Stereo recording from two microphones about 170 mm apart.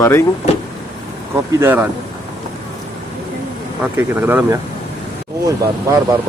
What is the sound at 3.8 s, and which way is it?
Speech, 10° right (ahead or behind).